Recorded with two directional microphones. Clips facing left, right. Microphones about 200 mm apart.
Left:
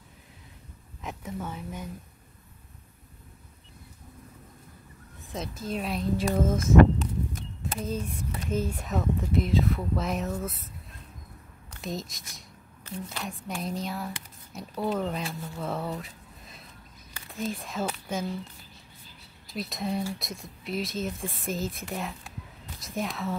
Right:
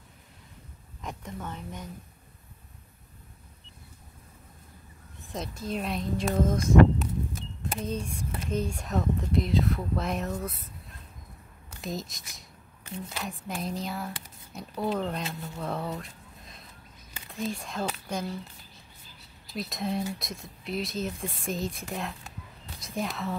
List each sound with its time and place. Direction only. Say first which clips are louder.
1.0 s speech: left 2 dB; 5° left (ahead or behind)
5.3 s speech: even; centre (ahead or behind)
11.7 s speech: even; centre (ahead or behind)
19.4 s speech: even; centre (ahead or behind)